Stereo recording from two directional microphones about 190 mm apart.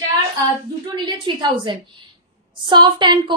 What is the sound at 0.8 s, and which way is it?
A woman's voice, 25° right (ahead or behind).